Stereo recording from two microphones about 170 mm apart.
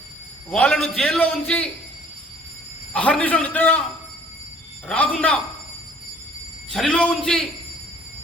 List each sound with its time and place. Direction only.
0.5 s a man's voice: 5° left (ahead or behind)
2.9 s a man's voice: 5° left (ahead or behind)
4.9 s a man's voice: 10° left (ahead or behind)
6.7 s a man's voice: 5° left (ahead or behind)